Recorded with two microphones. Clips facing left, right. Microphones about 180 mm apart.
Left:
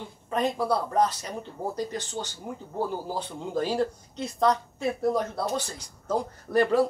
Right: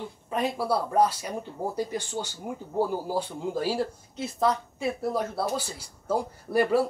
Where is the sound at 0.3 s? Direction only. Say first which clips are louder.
Left 1 dB; 5° right (ahead or behind).